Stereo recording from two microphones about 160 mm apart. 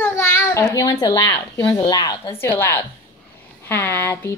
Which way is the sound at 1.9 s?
25° left (ahead or behind).